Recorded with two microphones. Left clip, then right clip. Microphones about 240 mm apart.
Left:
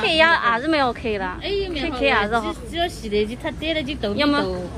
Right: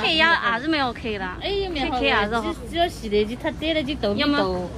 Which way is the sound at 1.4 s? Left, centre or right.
Right.